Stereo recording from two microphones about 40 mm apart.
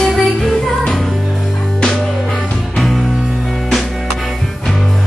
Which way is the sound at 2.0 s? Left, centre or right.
Left.